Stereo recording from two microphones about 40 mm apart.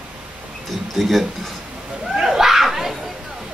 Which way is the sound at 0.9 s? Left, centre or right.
Centre.